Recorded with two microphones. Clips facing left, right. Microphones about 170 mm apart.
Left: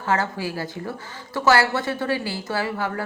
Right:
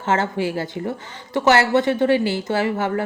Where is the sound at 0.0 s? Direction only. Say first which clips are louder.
Right 3 dB; 25° right (ahead or behind).